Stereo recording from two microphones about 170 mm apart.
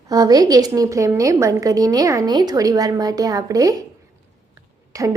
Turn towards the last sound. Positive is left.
turn(degrees=-20)  # may be behind; listen again after turning